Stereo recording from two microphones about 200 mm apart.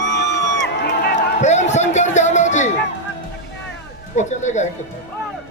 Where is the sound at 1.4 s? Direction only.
35° left (ahead or behind).